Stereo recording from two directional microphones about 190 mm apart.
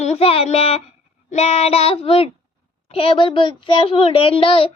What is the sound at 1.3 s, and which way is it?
Child singing, 35° left (ahead or behind).